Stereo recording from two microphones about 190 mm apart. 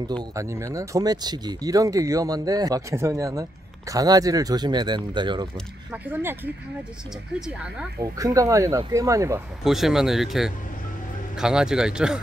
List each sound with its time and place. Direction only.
0.1 s speech: 15° right (ahead or behind)
6.0 s speech: 10° right (ahead or behind)
8.0 s speech: 15° right (ahead or behind)
9.6 s speech: centre (ahead or behind)